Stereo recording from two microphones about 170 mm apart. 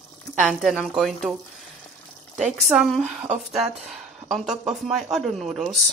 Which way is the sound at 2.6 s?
Centre (ahead or behind).